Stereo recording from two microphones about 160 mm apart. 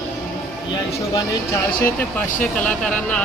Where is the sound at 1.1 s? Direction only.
15° left (ahead or behind).